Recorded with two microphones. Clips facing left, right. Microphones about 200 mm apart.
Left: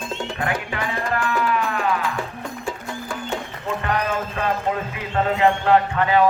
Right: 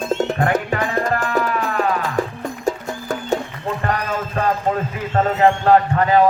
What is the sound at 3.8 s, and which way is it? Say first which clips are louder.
Clip-clop: even; 40° right (ahead or behind).